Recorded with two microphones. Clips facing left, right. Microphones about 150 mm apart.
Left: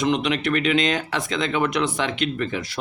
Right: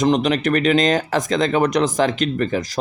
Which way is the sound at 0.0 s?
40° right (ahead or behind).